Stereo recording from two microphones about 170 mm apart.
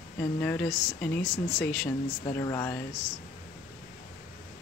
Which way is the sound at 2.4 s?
20° left (ahead or behind).